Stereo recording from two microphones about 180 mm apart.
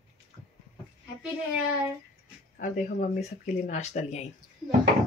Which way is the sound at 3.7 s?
40° left (ahead or behind).